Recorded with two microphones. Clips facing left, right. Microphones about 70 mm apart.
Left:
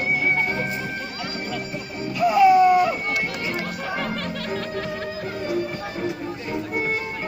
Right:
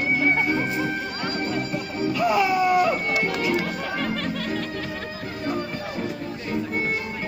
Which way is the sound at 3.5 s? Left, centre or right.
Centre.